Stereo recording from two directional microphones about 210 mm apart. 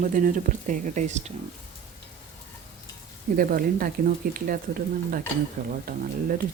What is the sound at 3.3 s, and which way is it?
Speech, 40° right (ahead or behind).